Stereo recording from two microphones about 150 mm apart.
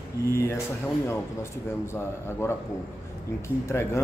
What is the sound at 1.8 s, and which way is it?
Speech, 15° left (ahead or behind).